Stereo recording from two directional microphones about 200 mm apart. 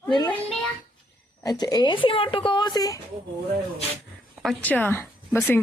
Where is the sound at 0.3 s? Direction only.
10° left (ahead or behind).